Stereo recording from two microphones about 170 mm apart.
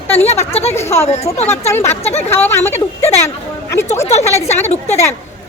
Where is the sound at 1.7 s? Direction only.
15° left (ahead or behind).